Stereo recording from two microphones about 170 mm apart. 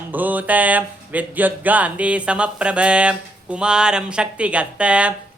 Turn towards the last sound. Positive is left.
turn(degrees=-5)  # may be behind; listen again after turning